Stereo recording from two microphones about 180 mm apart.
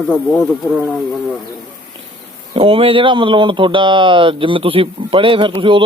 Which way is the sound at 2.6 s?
30° right (ahead or behind).